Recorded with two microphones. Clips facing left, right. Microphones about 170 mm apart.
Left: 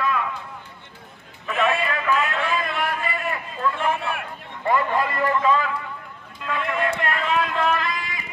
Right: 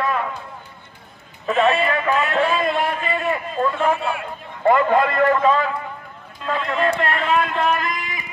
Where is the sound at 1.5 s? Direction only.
30° right (ahead or behind).